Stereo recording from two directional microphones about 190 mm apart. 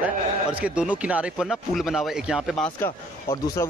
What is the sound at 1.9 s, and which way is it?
Speech, centre (ahead or behind).